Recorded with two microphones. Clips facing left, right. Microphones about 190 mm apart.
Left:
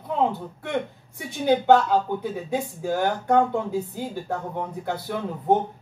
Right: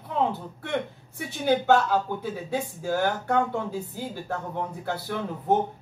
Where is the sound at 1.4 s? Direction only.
20° left (ahead or behind).